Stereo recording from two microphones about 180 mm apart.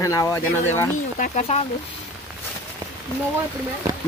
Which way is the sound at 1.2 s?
40° left (ahead or behind).